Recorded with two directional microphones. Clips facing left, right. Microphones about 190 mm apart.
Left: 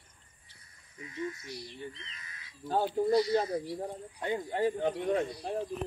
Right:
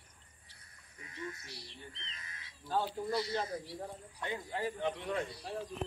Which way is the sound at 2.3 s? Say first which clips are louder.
Left 1 dB; 30° right (ahead or behind).